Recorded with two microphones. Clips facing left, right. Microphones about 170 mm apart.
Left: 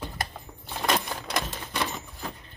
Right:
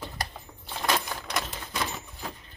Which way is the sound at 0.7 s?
15° left (ahead or behind).